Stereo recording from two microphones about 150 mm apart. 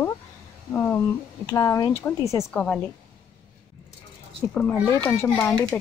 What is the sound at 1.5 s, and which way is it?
Speech, 20° left (ahead or behind).